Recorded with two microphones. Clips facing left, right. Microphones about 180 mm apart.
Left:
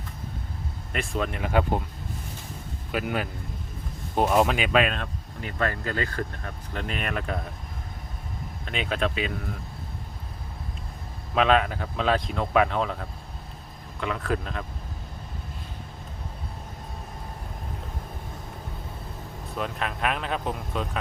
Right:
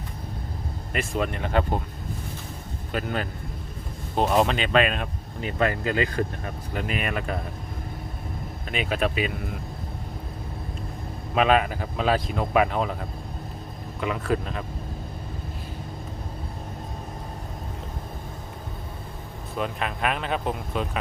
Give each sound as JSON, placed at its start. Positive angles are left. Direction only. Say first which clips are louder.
{"t": 0.9, "sound": "speech", "louder": "right 2 dB", "side_deg": 0}
{"t": 2.9, "sound": "a man's voice", "louder": "even", "side_deg": 10}
{"t": 4.9, "sound": "speech", "louder": "right 3 dB", "side_deg": -20}
{"t": 8.7, "sound": "speech", "louder": "right 2 dB", "side_deg": -5}
{"t": 11.3, "sound": "speech", "louder": "right 1 dB", "side_deg": -5}
{"t": 19.5, "sound": "speech", "louder": "right 2 dB", "side_deg": 0}